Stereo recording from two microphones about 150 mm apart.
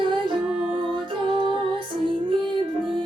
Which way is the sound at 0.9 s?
35° right (ahead or behind).